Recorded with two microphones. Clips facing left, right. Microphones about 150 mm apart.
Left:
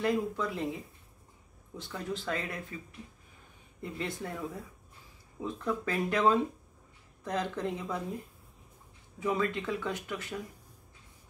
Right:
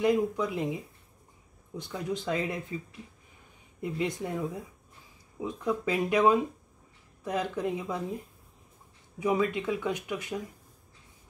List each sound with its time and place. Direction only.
0.0 s speech: 15° right (ahead or behind)
1.8 s speech: 15° right (ahead or behind)
3.8 s speech: 15° right (ahead or behind)
9.2 s speech: 15° right (ahead or behind)